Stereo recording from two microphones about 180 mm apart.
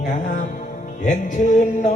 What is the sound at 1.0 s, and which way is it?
Music, 45° left (ahead or behind).